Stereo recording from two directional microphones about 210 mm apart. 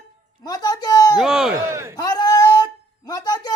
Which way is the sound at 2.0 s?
20° left (ahead or behind).